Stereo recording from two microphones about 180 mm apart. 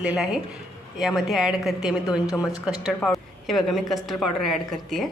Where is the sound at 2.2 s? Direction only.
15° left (ahead or behind).